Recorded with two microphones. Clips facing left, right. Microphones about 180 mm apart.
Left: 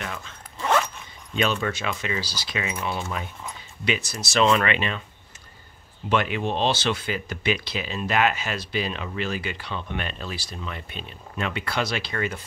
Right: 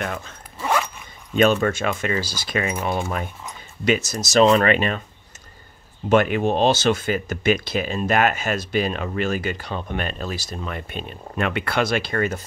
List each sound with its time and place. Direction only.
0.0 s zipper: 50° right (ahead or behind)
0.6 s zipper: 10° right (ahead or behind)
1.3 s speech: 50° right (ahead or behind)
6.0 s speech: 45° right (ahead or behind)